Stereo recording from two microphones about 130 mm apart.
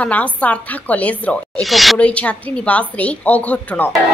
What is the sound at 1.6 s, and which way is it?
Speech, centre (ahead or behind).